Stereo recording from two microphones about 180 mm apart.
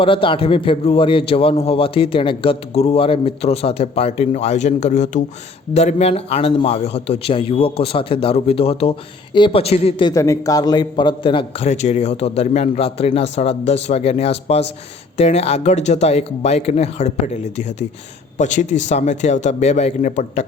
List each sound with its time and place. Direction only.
0.0 s a man's voice: 30° left (ahead or behind)
10.1 s a man's voice: 15° left (ahead or behind); by 20.4 s 45° left (ahead or behind)